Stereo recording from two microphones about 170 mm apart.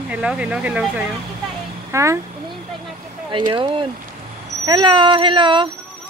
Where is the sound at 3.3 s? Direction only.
30° right (ahead or behind).